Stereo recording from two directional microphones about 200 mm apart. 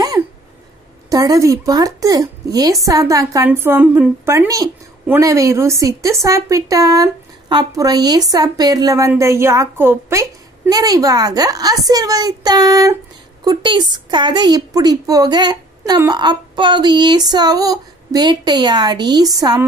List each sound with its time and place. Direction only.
1.1 s a woman's voice: 20° right (ahead or behind)